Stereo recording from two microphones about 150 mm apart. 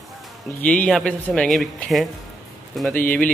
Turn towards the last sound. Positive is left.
turn(degrees=10)  # may be behind; listen again after turning